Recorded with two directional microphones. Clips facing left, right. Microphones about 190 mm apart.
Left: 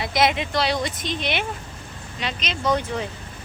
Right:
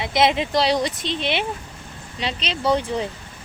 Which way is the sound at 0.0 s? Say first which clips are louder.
Right 2 dB; 25° right (ahead or behind).